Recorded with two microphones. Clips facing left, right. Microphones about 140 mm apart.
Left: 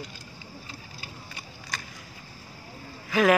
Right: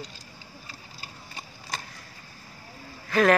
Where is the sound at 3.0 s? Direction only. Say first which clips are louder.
Right 1 dB; 5° left (ahead or behind).